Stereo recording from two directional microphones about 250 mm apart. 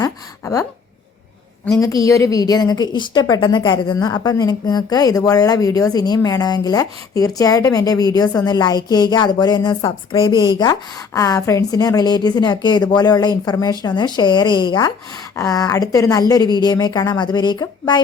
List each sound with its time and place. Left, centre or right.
0.0 s speech: centre
1.6 s a woman's voice: centre